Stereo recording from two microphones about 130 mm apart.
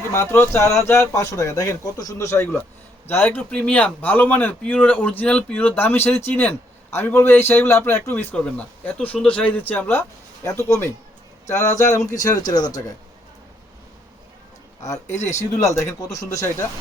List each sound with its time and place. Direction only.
0.1 s speech: 20° left (ahead or behind)
15.6 s speech: 20° left (ahead or behind)